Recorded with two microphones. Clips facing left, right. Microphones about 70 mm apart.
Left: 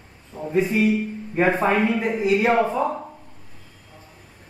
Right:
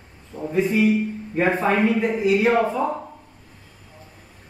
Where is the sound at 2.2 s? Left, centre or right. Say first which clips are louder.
Left 1 dB; left.